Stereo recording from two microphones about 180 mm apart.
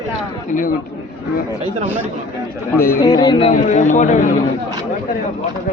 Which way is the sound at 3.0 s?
25° left (ahead or behind).